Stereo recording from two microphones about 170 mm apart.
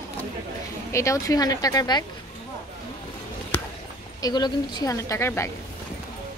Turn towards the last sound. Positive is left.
turn(degrees=15)  # may be behind; listen again after turning